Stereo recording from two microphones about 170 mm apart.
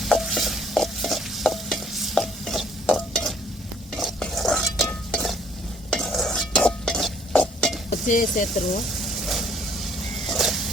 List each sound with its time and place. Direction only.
0.0 s stir: centre (ahead or behind)
7.9 s speech: 50° left (ahead or behind)
9.0 s vehicle: centre (ahead or behind)
10.2 s a sound: centre (ahead or behind)